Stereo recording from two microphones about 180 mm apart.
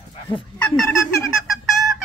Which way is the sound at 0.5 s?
5° left (ahead or behind).